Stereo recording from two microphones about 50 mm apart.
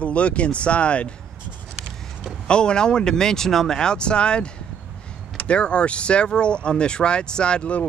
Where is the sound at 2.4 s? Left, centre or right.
Centre.